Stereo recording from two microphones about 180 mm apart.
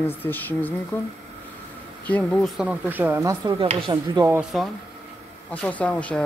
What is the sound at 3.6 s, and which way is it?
Speech, 25° right (ahead or behind).